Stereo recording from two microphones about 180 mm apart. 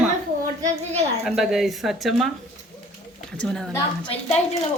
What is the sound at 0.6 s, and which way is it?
Speech, 35° right (ahead or behind).